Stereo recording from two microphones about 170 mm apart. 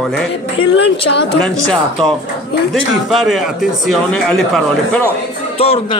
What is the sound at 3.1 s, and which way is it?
Speech, centre (ahead or behind).